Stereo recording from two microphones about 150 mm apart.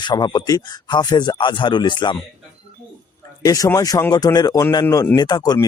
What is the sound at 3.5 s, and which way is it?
Speech, 20° left (ahead or behind).